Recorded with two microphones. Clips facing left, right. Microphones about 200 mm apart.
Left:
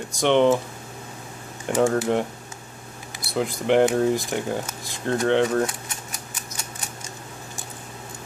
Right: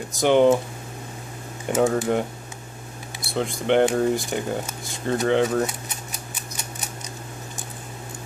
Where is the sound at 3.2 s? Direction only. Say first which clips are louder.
Left 1 dB; centre (ahead or behind).